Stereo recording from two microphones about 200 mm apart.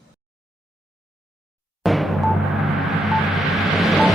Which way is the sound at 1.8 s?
Centre (ahead or behind).